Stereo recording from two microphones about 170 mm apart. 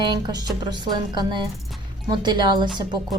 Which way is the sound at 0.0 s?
25° right (ahead or behind).